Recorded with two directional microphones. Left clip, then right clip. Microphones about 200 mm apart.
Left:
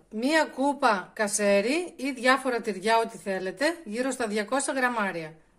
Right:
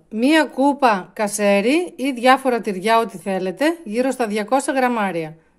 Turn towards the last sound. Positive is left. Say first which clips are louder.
# right 8 dB
turn(degrees=-40)  # may be behind; listen again after turning